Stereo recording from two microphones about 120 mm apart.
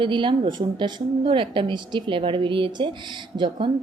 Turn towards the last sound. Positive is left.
turn(degrees=-40)  # may be behind; listen again after turning